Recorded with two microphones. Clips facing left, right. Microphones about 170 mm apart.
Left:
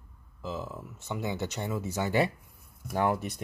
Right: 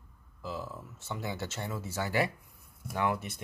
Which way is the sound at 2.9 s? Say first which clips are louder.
Left 4 dB; 40° left (ahead or behind).